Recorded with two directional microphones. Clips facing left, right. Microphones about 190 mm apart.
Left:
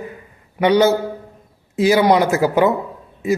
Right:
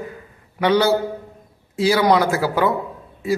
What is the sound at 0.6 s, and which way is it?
A man's voice, 20° left (ahead or behind).